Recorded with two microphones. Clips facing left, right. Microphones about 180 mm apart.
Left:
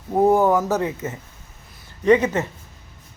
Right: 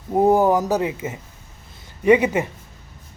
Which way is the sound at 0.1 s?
15° right (ahead or behind).